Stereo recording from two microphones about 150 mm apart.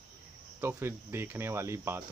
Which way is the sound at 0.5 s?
15° right (ahead or behind).